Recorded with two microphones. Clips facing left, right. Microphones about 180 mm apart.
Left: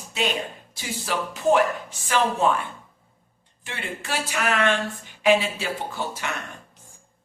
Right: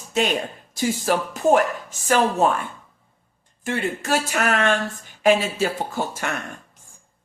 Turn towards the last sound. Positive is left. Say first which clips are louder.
# right 4 dB
turn(degrees=-45)  # may be behind; listen again after turning